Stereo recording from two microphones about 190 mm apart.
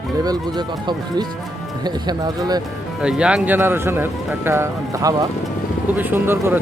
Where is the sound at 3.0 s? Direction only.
5° right (ahead or behind).